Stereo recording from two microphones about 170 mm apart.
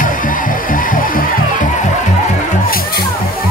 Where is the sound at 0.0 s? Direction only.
50° left (ahead or behind).